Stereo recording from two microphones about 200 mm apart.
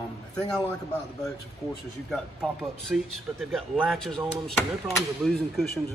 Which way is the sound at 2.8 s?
Centre (ahead or behind).